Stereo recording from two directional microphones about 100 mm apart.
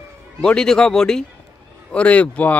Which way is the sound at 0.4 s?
5° left (ahead or behind).